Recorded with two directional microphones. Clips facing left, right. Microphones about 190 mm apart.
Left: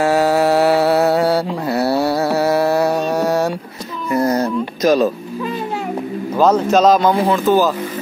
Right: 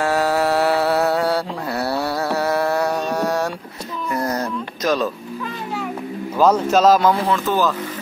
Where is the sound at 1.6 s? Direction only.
10° left (ahead or behind).